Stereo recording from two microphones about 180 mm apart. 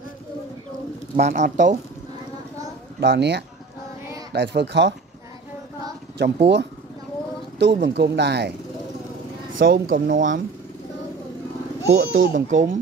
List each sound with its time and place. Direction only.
1.1 s speech: 40° right (ahead or behind)
3.0 s speech: 70° right (ahead or behind)
6.1 s speech: 65° right (ahead or behind)
9.7 s speech: 50° right (ahead or behind)
11.9 s speech: 75° right (ahead or behind)
12.4 s speech: 45° right (ahead or behind)